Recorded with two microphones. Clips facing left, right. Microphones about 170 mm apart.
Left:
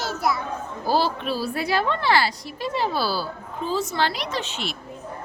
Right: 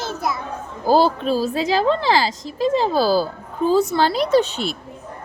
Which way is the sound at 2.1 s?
90° right.